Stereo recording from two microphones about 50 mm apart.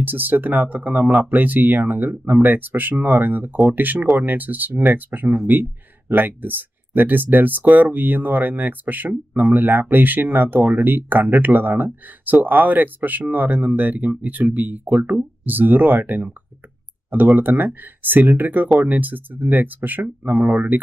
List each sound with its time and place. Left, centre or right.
0.0 s speech: right
17.4 s speech: right